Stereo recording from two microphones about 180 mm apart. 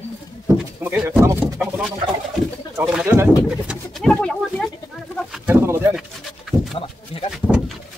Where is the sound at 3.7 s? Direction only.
Centre (ahead or behind).